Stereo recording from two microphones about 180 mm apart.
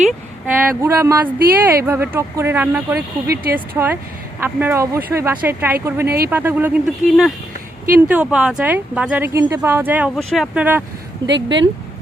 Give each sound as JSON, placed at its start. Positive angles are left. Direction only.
{"t": 0.4, "sound": "speech", "side_deg": -15}
{"t": 3.2, "sound": "speech", "side_deg": -55}
{"t": 4.4, "sound": "speech", "side_deg": -10}
{"t": 6.1, "sound": "speech", "side_deg": -60}
{"t": 6.3, "sound": "speech", "side_deg": -10}
{"t": 10.2, "sound": "speech", "side_deg": 0}
{"t": 11.3, "sound": "speech", "side_deg": -80}